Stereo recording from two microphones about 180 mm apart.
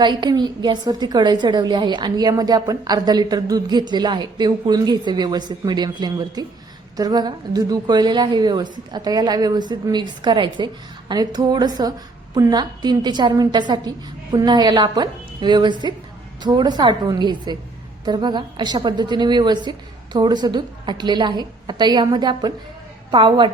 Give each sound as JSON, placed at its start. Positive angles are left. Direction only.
{"t": 0.0, "sound": "a woman's voice", "side_deg": -25}